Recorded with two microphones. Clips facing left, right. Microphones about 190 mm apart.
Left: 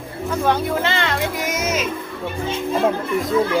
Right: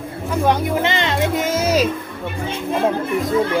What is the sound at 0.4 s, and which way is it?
Music, 20° right (ahead or behind).